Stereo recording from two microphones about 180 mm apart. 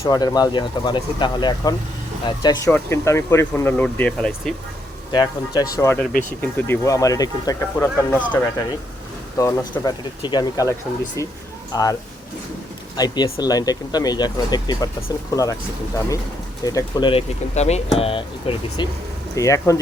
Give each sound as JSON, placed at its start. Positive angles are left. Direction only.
{"t": 0.0, "sound": "speech", "side_deg": 20}
{"t": 2.6, "sound": "speech", "side_deg": 10}
{"t": 5.1, "sound": "speech", "side_deg": 25}
{"t": 9.4, "sound": "speech", "side_deg": 15}
{"t": 13.0, "sound": "speech", "side_deg": 20}
{"t": 16.6, "sound": "speech", "side_deg": 25}
{"t": 19.4, "sound": "speech", "side_deg": 15}